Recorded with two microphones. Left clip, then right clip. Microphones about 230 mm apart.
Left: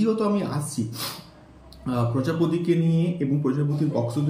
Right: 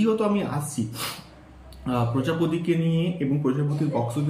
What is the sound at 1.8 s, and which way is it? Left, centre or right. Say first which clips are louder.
Speech: even; centre.